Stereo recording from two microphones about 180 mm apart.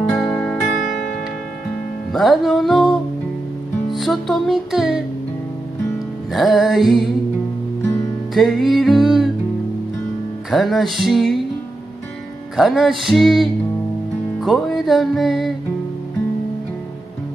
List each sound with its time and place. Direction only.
0.2 s music: 5° left (ahead or behind)
2.1 s music: centre (ahead or behind)
6.3 s music: centre (ahead or behind)
8.4 s music: centre (ahead or behind)
10.5 s music: centre (ahead or behind)
12.5 s music: centre (ahead or behind)